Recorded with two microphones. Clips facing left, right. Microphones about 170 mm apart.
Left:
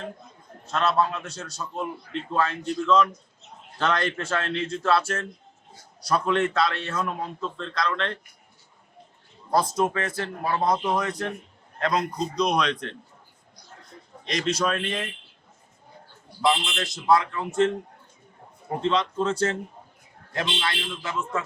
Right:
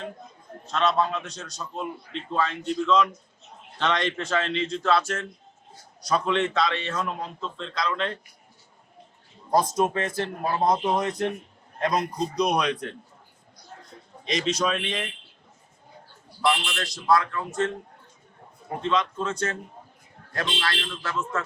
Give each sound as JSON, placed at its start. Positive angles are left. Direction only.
{"t": 0.7, "sound": "a man's voice", "side_deg": 5}
{"t": 9.7, "sound": "a man's voice", "side_deg": -20}
{"t": 14.3, "sound": "a man's voice", "side_deg": 0}
{"t": 16.5, "sound": "speech", "side_deg": 20}
{"t": 18.8, "sound": "speech", "side_deg": 30}